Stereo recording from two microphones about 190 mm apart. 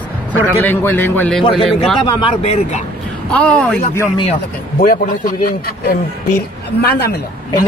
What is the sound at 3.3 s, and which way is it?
Speech, 5° left (ahead or behind).